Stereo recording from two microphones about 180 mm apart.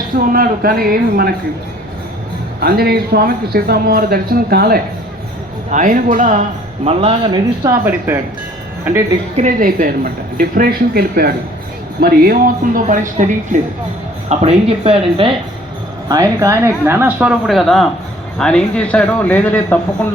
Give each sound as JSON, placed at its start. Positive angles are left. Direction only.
{"t": 0.2, "sound": "a man's voice", "side_deg": -55}
{"t": 2.6, "sound": "a man's voice", "side_deg": -60}
{"t": 5.7, "sound": "speech", "side_deg": -45}
{"t": 6.8, "sound": "a woman's voice", "side_deg": -35}
{"t": 7.6, "sound": "speech", "side_deg": -15}
{"t": 9.3, "sound": "speech", "side_deg": -45}
{"t": 14.3, "sound": "a woman's voice", "side_deg": -35}
{"t": 16.0, "sound": "a man's voice", "side_deg": -20}